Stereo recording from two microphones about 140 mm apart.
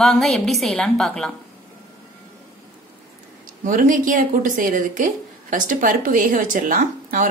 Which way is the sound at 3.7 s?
70° right (ahead or behind).